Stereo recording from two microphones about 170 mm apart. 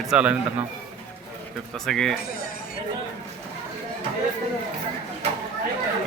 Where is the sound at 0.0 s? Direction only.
5° right (ahead or behind).